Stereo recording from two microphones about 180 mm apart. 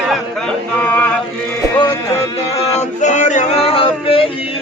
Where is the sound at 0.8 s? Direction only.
10° left (ahead or behind).